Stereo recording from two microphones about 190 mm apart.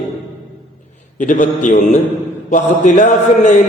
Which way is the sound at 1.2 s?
40° left (ahead or behind).